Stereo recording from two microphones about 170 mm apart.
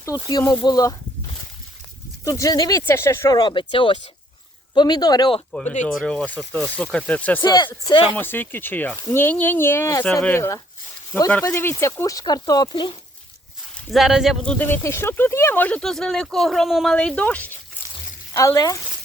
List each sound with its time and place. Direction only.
0.3 s speech: 20° left (ahead or behind)
2.2 s speech: 20° left (ahead or behind)
5.5 s speech: 5° left (ahead or behind)
7.4 s speech: 25° left (ahead or behind)
8.1 s speech: 10° left (ahead or behind); by 13.0 s 25° left (ahead or behind)
13.7 s speech: centre (ahead or behind)
18.3 s speech: 20° left (ahead or behind)